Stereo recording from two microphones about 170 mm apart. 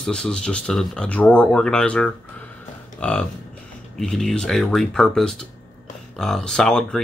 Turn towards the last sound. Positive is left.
turn(degrees=5)  # may be behind; listen again after turning